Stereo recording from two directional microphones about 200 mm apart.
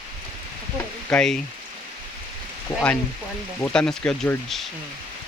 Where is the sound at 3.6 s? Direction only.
5° left (ahead or behind).